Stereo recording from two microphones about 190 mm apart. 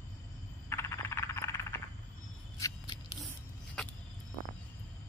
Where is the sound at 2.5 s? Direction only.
20° left (ahead or behind).